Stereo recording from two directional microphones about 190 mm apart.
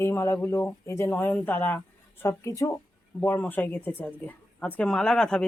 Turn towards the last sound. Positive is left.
turn(degrees=5)  # may be behind; listen again after turning